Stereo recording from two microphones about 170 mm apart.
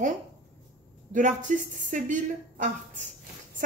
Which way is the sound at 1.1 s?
50° right (ahead or behind).